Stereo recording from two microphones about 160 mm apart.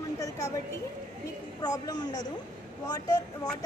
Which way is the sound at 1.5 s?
25° left (ahead or behind).